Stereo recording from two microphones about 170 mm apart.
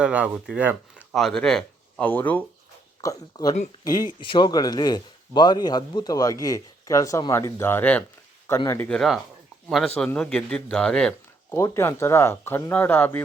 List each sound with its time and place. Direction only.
0.0 s speech: 5° right (ahead or behind)
1.1 s speech: 5° left (ahead or behind)
3.0 s speech: 20° left (ahead or behind); by 11.1 s 5° left (ahead or behind)
11.5 s speech: 15° left (ahead or behind)